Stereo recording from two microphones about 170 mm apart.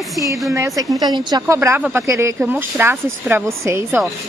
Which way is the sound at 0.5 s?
20° right (ahead or behind).